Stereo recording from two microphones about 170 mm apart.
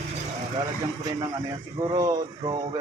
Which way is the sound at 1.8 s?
20° right (ahead or behind).